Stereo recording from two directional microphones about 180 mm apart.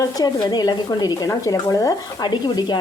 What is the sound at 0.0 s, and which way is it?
Speech, 20° left (ahead or behind).